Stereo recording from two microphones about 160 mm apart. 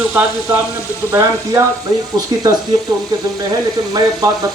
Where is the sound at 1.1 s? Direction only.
20° right (ahead or behind).